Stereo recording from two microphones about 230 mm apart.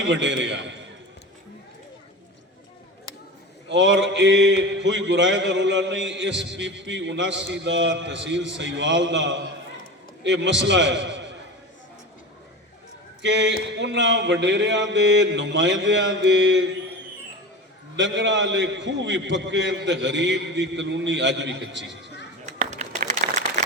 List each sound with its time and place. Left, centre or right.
0.1 s mantra: right
3.7 s mantra: right
13.2 s mantra: right
17.9 s mantra: right
22.4 s shuffling cards: right